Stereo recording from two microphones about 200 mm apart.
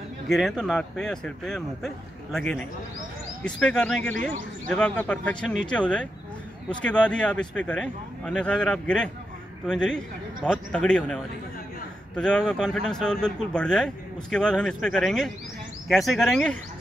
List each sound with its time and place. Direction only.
0.3 s speech: centre (ahead or behind)
4.2 s a man's voice: 40° right (ahead or behind)
4.6 s speech: 5° left (ahead or behind)
12.2 s speech: 5° left (ahead or behind)